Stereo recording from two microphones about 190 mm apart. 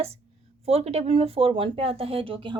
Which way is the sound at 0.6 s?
30° right (ahead or behind).